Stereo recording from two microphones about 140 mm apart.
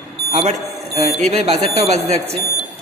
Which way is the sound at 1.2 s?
50° right (ahead or behind).